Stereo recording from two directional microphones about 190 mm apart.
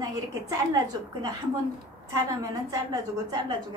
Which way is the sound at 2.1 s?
15° right (ahead or behind).